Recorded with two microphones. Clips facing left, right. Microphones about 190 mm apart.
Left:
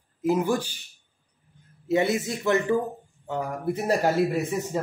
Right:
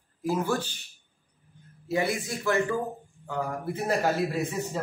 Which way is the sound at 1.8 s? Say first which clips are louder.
Left 5 dB; 20° left (ahead or behind).